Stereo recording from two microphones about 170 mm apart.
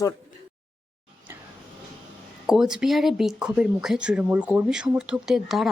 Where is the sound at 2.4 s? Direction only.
5° right (ahead or behind).